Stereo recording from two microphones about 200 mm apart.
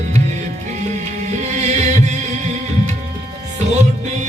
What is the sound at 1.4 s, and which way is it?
Heart sounds, 35° right (ahead or behind).